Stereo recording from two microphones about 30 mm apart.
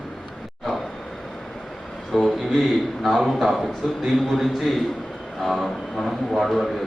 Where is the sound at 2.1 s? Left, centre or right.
Centre.